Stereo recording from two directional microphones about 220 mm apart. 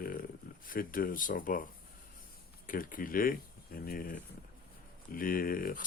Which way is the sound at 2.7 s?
40° left (ahead or behind).